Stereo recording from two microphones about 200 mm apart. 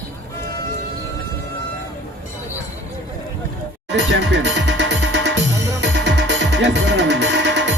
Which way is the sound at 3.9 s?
65° right (ahead or behind).